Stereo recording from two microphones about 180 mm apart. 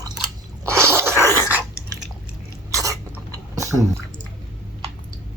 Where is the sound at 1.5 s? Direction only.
10° right (ahead or behind).